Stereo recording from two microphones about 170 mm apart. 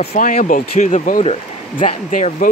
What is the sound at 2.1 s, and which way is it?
Speech, 50° left (ahead or behind).